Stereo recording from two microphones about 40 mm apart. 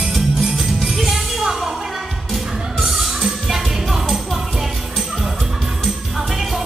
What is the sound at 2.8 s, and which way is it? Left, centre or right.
Music, centre.